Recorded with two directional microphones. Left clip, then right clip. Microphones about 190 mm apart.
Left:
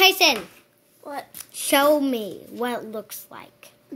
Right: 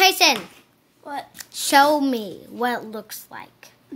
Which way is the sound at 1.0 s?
5° right (ahead or behind).